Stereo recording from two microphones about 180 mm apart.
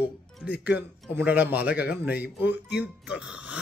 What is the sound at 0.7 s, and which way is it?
Speech, 10° right (ahead or behind).